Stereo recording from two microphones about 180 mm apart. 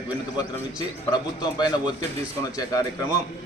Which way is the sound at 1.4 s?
25° left (ahead or behind).